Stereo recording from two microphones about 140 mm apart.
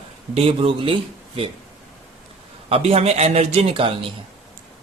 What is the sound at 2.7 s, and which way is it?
A man's voice, 45° right (ahead or behind).